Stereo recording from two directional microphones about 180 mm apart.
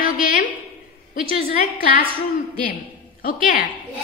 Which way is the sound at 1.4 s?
55° left (ahead or behind).